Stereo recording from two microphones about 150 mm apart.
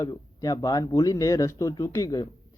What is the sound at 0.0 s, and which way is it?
Speech, 20° left (ahead or behind).